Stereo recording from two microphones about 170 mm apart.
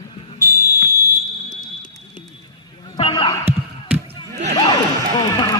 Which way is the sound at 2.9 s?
30° left (ahead or behind).